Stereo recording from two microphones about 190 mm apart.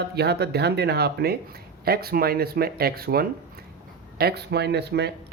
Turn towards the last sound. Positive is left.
turn(degrees=-60)  # may be behind; listen again after turning